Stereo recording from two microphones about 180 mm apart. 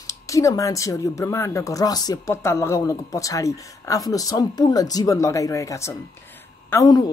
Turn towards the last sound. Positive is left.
turn(degrees=20)  # may be behind; listen again after turning